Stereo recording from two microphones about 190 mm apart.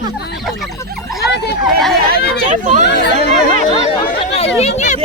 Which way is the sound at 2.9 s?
60° left (ahead or behind).